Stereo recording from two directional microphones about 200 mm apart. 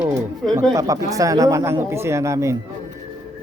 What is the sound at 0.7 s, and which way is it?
Speech, 15° right (ahead or behind).